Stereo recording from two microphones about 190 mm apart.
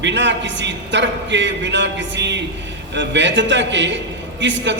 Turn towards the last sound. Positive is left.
turn(degrees=-70)  # may be behind; listen again after turning